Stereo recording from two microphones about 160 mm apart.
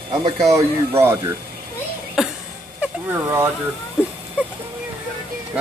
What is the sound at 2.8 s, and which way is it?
Speech, 10° right (ahead or behind).